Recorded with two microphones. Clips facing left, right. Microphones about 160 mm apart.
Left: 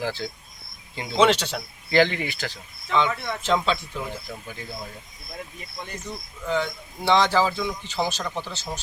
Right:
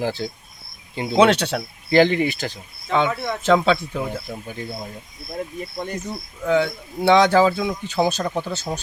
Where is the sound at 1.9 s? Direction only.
15° right (ahead or behind).